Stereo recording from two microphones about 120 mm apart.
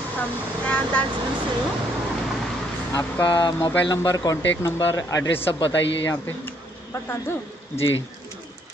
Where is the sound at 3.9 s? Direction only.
30° left (ahead or behind).